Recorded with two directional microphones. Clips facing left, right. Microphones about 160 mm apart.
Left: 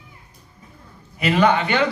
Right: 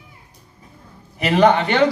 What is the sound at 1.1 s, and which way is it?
Speech, 40° right (ahead or behind).